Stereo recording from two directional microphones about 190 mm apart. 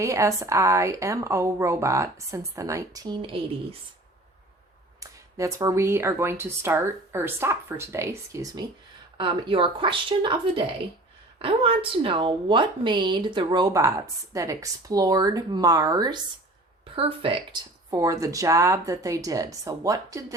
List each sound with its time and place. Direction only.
0.0 s speech: 15° right (ahead or behind)
4.9 s a woman's voice: 15° right (ahead or behind)
17.9 s speech: 15° right (ahead or behind)